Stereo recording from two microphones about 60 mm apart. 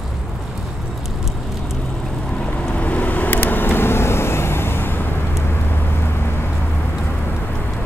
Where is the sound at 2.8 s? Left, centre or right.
Left.